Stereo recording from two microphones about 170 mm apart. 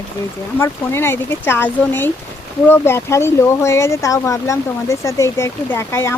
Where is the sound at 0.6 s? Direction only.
15° left (ahead or behind).